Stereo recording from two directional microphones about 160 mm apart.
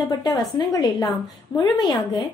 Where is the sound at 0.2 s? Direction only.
25° left (ahead or behind).